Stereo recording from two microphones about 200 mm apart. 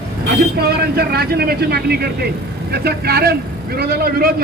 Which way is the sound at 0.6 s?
50° right (ahead or behind).